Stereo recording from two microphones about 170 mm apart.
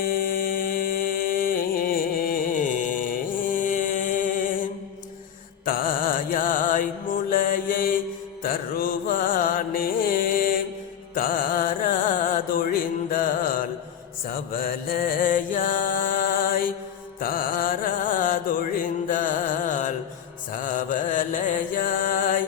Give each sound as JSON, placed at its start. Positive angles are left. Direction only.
{"t": 0.0, "sound": "music", "side_deg": 55}
{"t": 5.6, "sound": "mantra", "side_deg": 55}
{"t": 7.3, "sound": "music", "side_deg": 55}
{"t": 14.3, "sound": "mantra", "side_deg": 60}
{"t": 17.2, "sound": "music", "side_deg": 55}